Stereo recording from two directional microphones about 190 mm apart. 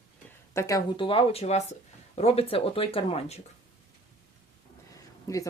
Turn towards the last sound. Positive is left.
turn(degrees=15)  # may be behind; listen again after turning